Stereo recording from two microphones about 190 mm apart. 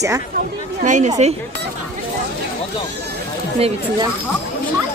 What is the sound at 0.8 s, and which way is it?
Speech, 40° right (ahead or behind).